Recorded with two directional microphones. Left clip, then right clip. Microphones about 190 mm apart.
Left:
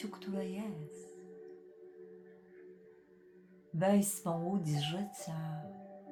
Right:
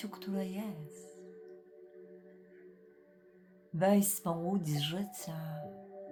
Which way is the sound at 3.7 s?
35° right (ahead or behind).